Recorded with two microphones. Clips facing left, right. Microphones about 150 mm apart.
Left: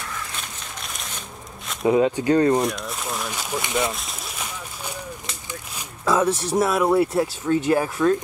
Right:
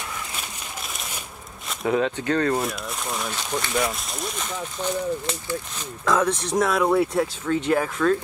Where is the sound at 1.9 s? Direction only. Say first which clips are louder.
Left 5 dB; 15° left (ahead or behind).